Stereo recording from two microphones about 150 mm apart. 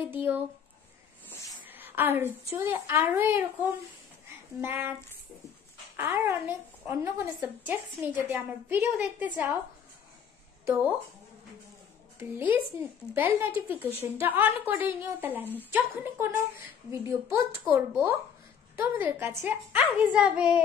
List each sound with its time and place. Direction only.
0.1 s a woman's voice: 15° right (ahead or behind)
1.6 s a sound: 15° right (ahead or behind)
2.5 s a woman's voice: 15° right (ahead or behind)
4.6 s a woman's voice: 15° right (ahead or behind)
5.9 s a woman's voice: 15° right (ahead or behind)
10.6 s a sound: 15° right (ahead or behind)
12.2 s a woman's voice: 15° right (ahead or behind)
19.8 s a child's voice: 5° right (ahead or behind)